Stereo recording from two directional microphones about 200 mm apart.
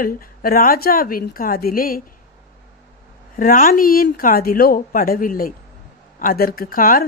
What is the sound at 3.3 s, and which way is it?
A woman's voice, 45° left (ahead or behind).